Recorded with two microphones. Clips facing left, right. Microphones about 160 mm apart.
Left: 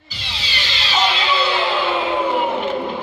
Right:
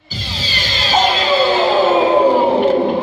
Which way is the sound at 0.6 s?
45° right (ahead or behind).